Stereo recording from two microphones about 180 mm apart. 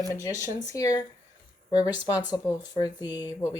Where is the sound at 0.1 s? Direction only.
15° left (ahead or behind).